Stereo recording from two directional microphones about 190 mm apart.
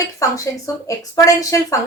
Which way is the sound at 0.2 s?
15° left (ahead or behind).